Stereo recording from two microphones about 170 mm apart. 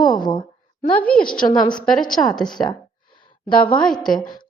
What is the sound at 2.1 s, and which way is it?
Speech, centre (ahead or behind).